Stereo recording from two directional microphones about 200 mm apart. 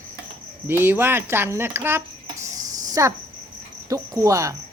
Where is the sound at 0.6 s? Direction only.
10° right (ahead or behind).